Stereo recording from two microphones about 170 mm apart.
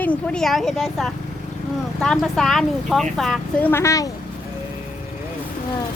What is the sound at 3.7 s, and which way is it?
Speech, 15° left (ahead or behind).